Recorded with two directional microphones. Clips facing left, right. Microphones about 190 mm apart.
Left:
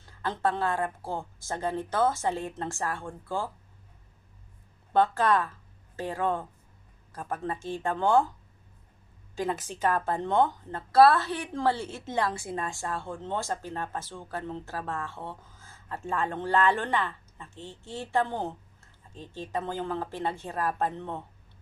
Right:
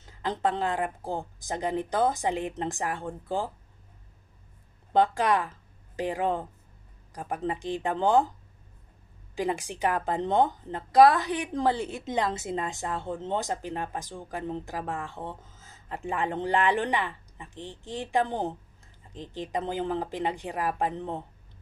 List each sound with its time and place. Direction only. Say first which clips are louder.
0.0 s a woman's voice: right 1 dB; 15° right (ahead or behind)
4.9 s a woman's voice: even; 15° right (ahead or behind)
9.3 s a woman's voice: right 2 dB; 15° right (ahead or behind)